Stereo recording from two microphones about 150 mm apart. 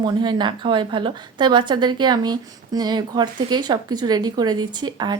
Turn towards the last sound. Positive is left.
turn(degrees=-30)  # may be behind; listen again after turning